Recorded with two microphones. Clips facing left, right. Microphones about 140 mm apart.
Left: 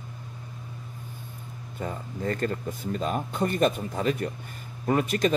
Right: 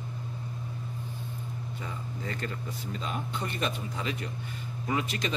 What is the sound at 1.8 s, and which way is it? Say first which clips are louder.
Speech: left 10 dB; 45° left (ahead or behind).